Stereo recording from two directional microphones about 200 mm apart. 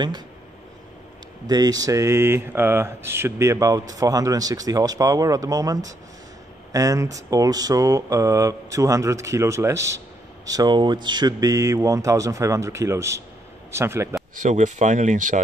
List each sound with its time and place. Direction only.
1.5 s a man's voice: 20° right (ahead or behind)
14.3 s speech: 40° right (ahead or behind)